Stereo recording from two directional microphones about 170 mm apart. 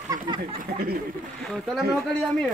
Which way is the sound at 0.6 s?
60° right (ahead or behind).